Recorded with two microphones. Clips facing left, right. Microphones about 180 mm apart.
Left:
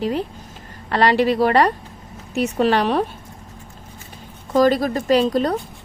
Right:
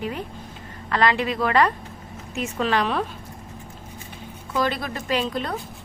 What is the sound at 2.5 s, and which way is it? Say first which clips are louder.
Speech: left 5 dB; 35° left (ahead or behind).